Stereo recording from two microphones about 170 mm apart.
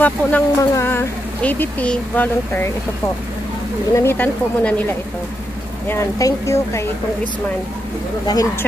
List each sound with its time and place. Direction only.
0.0 s speech: 15° left (ahead or behind)
3.9 s speech: 15° left (ahead or behind)
5.9 s speech: 20° left (ahead or behind)